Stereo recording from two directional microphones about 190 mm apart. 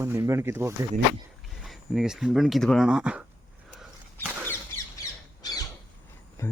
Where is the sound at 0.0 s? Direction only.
15° right (ahead or behind).